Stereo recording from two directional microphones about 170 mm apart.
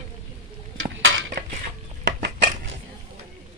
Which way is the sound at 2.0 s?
90° right.